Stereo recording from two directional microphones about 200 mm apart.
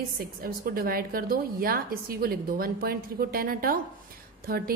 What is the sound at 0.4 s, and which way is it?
A woman's voice, 45° right (ahead or behind).